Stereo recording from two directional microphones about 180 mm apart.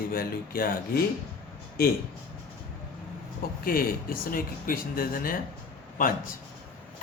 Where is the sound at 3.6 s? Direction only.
55° left (ahead or behind).